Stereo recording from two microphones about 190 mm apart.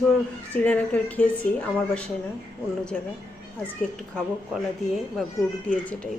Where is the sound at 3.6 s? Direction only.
10° left (ahead or behind).